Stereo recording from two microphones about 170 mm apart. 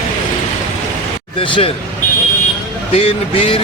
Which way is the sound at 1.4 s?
30° left (ahead or behind).